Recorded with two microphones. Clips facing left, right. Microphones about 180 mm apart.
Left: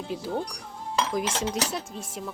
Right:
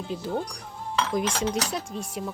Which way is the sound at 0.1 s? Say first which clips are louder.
Right 1 dB; 10° left (ahead or behind).